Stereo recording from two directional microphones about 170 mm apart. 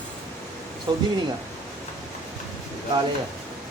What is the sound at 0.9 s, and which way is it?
Speech, 25° right (ahead or behind).